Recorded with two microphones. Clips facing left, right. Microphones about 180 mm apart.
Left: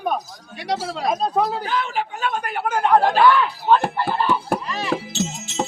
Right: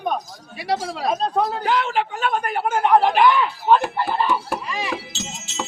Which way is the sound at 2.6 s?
25° right (ahead or behind).